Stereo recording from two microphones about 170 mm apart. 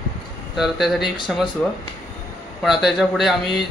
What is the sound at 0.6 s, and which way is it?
Speech, centre (ahead or behind).